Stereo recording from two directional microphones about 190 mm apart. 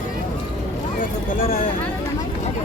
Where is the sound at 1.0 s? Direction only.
45° left (ahead or behind).